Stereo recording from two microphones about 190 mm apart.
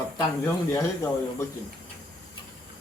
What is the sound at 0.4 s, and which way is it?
Speech, 15° left (ahead or behind).